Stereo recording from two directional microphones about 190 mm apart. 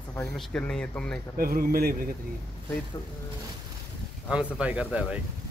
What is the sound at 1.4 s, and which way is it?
Speech, 50° right (ahead or behind).